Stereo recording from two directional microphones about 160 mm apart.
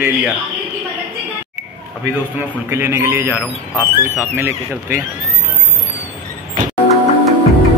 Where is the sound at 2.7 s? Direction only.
15° right (ahead or behind).